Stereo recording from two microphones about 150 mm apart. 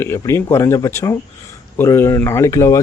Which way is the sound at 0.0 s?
15° left (ahead or behind).